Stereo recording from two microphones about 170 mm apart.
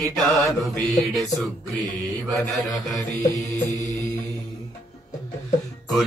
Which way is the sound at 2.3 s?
Centre (ahead or behind).